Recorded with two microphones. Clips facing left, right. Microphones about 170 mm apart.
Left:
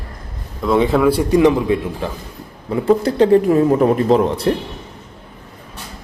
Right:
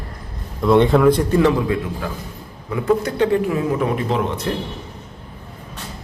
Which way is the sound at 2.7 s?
30° left (ahead or behind).